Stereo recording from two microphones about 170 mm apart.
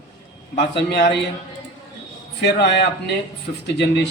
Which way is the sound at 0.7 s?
75° left (ahead or behind).